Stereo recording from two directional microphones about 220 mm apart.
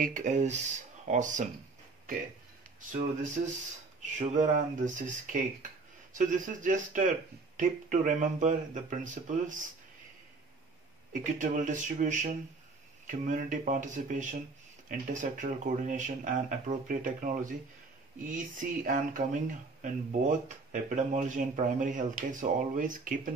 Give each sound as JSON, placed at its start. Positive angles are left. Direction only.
{"t": 0.0, "sound": "speech", "side_deg": -35}
{"t": 2.9, "sound": "speech", "side_deg": -35}
{"t": 11.3, "sound": "speech", "side_deg": -35}